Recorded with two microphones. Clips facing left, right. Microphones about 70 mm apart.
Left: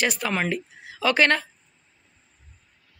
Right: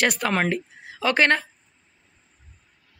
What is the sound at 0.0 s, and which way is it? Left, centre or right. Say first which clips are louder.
Speech: right 3 dB; right.